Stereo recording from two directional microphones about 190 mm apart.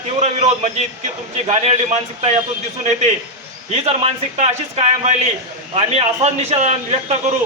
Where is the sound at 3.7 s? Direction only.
35° right (ahead or behind).